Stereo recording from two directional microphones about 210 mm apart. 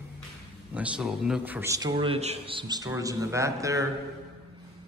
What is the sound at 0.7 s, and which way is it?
A man's voice, 5° right (ahead or behind).